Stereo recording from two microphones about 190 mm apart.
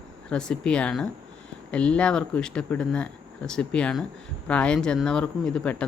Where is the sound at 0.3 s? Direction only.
5° left (ahead or behind).